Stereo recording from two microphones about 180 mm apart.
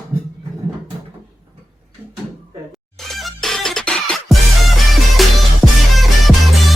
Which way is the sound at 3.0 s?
Centre (ahead or behind).